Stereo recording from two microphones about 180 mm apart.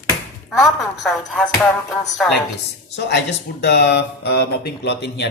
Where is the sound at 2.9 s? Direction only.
75° left (ahead or behind).